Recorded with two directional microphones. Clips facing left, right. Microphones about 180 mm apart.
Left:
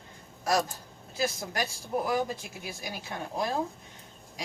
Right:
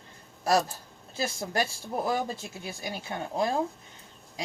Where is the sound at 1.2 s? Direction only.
30° right (ahead or behind).